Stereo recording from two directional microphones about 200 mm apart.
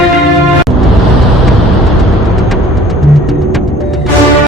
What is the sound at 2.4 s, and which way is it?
Music, centre (ahead or behind).